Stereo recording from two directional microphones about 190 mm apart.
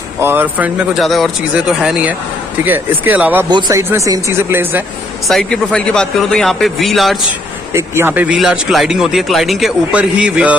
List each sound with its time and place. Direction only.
0.2 s a man's voice: 10° right (ahead or behind)
3.4 s speech: 20° right (ahead or behind)
5.3 s a man's voice: 5° left (ahead or behind)
7.7 s a man's voice: 15° right (ahead or behind)